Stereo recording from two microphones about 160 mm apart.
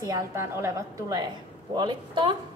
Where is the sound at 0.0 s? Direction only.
20° right (ahead or behind).